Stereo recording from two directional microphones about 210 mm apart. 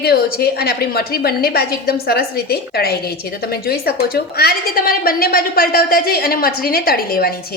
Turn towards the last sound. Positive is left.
turn(degrees=45)  # may be behind; listen again after turning